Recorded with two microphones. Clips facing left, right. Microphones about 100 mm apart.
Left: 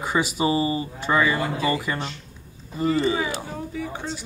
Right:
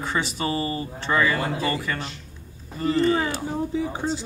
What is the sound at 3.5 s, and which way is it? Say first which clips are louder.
Speech: right 5 dB; 20° right (ahead or behind).